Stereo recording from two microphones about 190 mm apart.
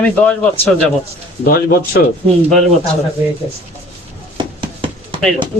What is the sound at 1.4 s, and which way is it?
Speech, 50° left (ahead or behind).